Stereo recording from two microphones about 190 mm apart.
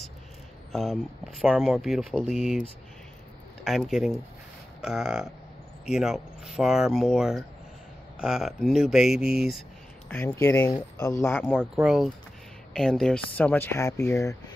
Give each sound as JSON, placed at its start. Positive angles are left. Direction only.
{"t": 0.7, "sound": "speech", "side_deg": 0}
{"t": 3.6, "sound": "speech", "side_deg": 0}
{"t": 11.3, "sound": "speech", "side_deg": 5}